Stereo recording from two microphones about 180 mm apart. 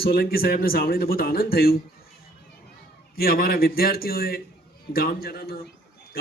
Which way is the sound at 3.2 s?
55° left (ahead or behind).